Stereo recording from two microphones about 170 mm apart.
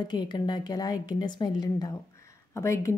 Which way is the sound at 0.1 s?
25° left (ahead or behind).